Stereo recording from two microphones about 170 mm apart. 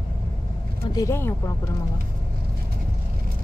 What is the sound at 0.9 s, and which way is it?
Speech, 20° left (ahead or behind).